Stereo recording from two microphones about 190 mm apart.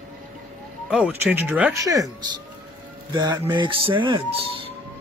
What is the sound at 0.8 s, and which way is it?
Speech, 5° right (ahead or behind).